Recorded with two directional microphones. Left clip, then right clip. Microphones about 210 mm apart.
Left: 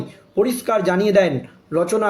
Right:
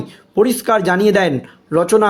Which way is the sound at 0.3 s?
40° right (ahead or behind).